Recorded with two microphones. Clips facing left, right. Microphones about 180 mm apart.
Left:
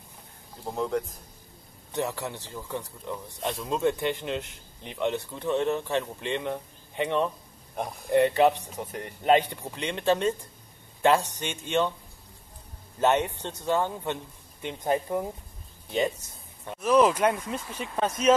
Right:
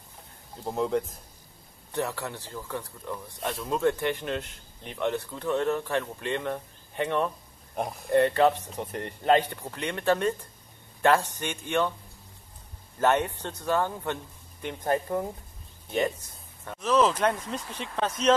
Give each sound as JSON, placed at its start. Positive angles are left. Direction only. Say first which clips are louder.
{"t": 0.7, "sound": "speech", "louder": "right 2 dB", "side_deg": -5}
{"t": 1.9, "sound": "speech", "louder": "left 1 dB", "side_deg": 15}
{"t": 8.7, "sound": "speech", "louder": "right 2 dB", "side_deg": 0}
{"t": 9.2, "sound": "speech", "louder": "left 1 dB", "side_deg": 15}
{"t": 13.0, "sound": "speech", "louder": "even", "side_deg": 20}
{"t": 16.6, "sound": "speech", "louder": "left 2 dB", "side_deg": 15}